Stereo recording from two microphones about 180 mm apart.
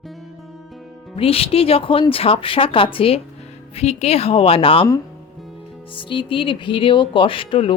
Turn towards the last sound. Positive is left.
turn(degrees=30)  # may be behind; listen again after turning